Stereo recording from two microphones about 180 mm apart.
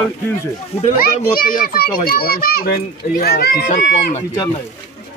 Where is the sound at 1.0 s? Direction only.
55° left (ahead or behind).